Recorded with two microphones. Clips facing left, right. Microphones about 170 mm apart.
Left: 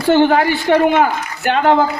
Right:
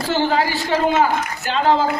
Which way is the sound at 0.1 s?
55° left (ahead or behind).